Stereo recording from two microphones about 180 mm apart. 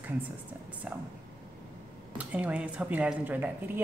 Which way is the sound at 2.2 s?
5° right (ahead or behind).